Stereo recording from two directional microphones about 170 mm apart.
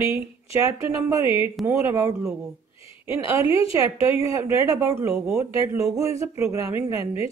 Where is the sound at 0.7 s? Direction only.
15° right (ahead or behind).